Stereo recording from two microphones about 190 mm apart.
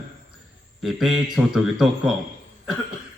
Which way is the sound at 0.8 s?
Centre (ahead or behind).